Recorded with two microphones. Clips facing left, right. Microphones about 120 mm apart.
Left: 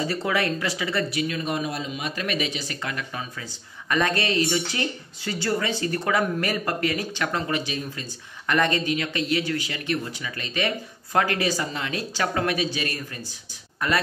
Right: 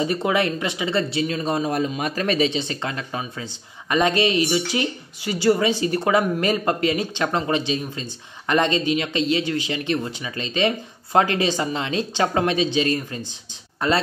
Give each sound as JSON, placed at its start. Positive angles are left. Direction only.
{"t": 0.0, "sound": "speech", "side_deg": -20}
{"t": 1.7, "sound": "speech", "side_deg": -50}
{"t": 2.2, "sound": "speech", "side_deg": -30}